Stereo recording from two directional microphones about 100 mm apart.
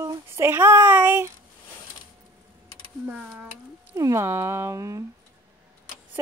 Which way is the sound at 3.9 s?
30° right (ahead or behind).